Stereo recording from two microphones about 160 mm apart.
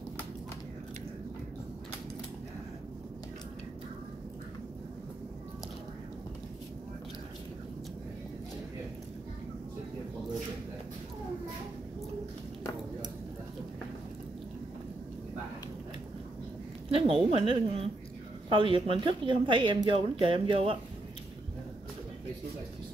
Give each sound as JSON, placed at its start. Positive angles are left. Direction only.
{"t": 16.9, "sound": "a woman's voice", "side_deg": -35}